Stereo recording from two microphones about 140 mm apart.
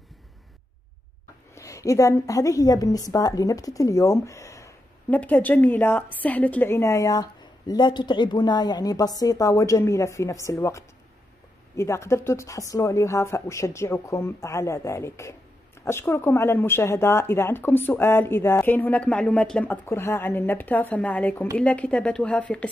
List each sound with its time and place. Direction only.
1.5 s a woman's voice: 20° left (ahead or behind)